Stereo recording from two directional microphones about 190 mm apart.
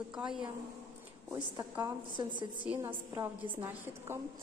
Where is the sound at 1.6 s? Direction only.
20° right (ahead or behind).